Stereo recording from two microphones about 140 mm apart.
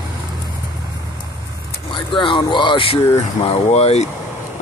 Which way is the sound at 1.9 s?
35° left (ahead or behind).